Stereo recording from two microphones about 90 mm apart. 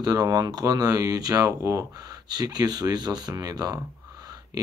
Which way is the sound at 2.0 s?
50° right (ahead or behind).